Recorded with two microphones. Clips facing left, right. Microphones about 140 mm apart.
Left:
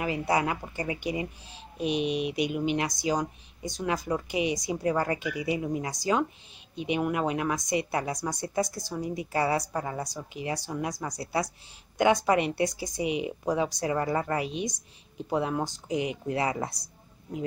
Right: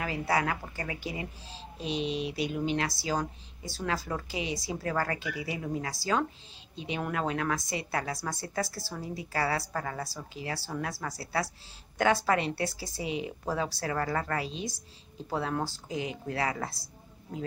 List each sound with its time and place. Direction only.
0.0 s a woman's voice: 20° left (ahead or behind)